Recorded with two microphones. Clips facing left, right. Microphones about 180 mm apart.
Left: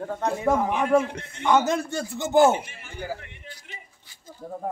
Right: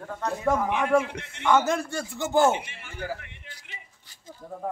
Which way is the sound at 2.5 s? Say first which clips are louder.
Left 2 dB; 45° left (ahead or behind).